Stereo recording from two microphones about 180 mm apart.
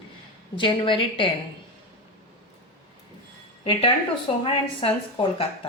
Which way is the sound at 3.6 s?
30° left (ahead or behind).